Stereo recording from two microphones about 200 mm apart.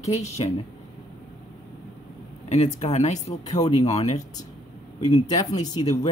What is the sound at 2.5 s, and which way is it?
Speech, 35° left (ahead or behind).